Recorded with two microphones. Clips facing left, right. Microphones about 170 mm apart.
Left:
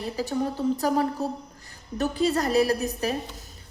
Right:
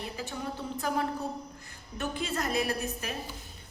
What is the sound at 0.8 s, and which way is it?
A woman's voice, 35° left (ahead or behind).